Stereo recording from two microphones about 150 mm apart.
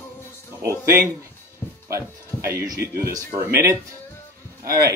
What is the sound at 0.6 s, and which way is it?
Speech, 20° right (ahead or behind).